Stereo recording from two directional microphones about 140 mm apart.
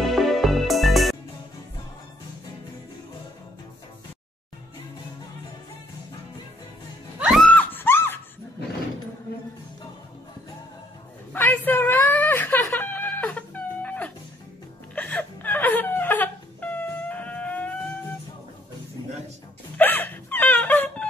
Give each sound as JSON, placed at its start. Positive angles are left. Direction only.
{"t": 0.0, "sound": "music", "side_deg": 0}
{"t": 7.2, "sound": "music", "side_deg": -5}
{"t": 7.4, "sound": "a sound", "side_deg": 15}
{"t": 11.3, "sound": "a sound", "side_deg": 15}
{"t": 15.0, "sound": "whimper", "side_deg": 10}
{"t": 19.8, "sound": "hiccup", "side_deg": 15}